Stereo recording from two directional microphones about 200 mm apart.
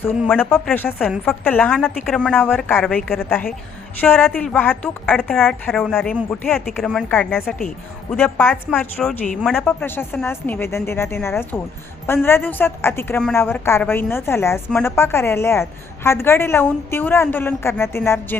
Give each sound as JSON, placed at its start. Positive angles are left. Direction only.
{"t": 0.3, "sound": "a woman's voice", "side_deg": 5}